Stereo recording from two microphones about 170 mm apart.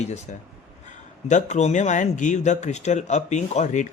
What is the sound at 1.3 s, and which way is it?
Speech, 45° left (ahead or behind).